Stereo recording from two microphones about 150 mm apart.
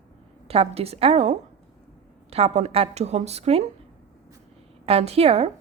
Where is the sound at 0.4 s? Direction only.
40° right (ahead or behind).